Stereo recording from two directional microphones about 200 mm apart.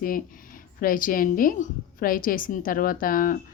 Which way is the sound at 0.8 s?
45° left (ahead or behind).